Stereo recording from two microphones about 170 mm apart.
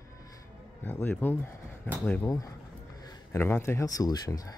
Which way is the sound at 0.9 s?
10° left (ahead or behind).